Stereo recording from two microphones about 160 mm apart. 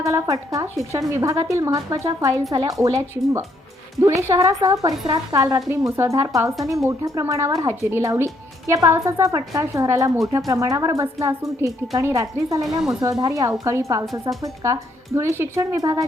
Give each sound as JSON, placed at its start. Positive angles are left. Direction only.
{"t": 0.0, "sound": "speech", "side_deg": -20}
{"t": 14.0, "sound": "a woman's voice", "side_deg": 0}
{"t": 14.4, "sound": "speech", "side_deg": -20}